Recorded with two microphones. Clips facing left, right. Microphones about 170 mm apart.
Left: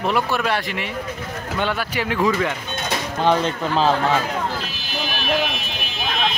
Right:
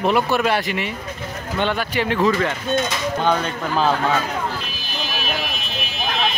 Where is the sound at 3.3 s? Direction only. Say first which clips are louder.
Left 5 dB; 30° left (ahead or behind).